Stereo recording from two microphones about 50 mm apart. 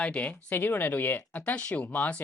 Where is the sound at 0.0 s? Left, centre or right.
Left.